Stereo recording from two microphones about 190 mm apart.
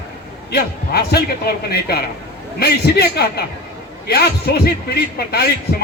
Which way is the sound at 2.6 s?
60° left (ahead or behind).